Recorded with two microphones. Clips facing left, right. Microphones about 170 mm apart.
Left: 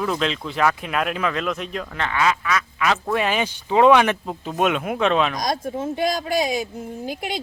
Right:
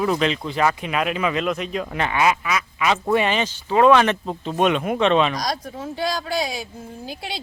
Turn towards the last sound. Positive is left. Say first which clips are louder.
# left 4 dB
turn(degrees=20)  # may be behind; listen again after turning